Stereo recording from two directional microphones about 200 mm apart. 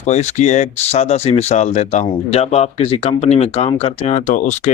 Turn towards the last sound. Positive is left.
turn(degrees=35)  # may be behind; listen again after turning